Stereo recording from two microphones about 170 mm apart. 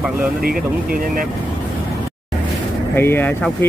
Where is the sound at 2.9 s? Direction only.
15° left (ahead or behind).